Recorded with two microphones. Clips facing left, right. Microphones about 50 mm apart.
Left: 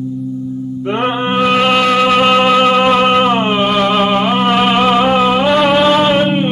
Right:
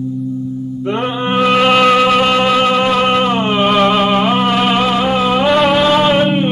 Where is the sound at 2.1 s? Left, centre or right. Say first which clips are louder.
Left 2 dB; centre.